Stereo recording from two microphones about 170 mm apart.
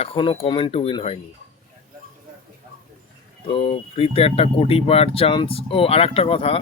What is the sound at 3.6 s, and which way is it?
Speech, 35° left (ahead or behind).